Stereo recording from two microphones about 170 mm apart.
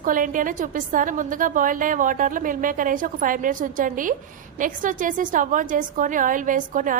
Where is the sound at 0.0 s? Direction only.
50° right (ahead or behind).